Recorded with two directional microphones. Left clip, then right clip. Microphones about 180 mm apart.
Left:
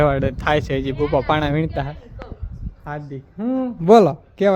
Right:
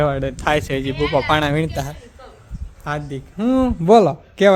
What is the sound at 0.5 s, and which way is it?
A man's voice, 5° left (ahead or behind).